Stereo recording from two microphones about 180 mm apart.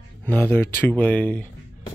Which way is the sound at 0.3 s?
10° left (ahead or behind).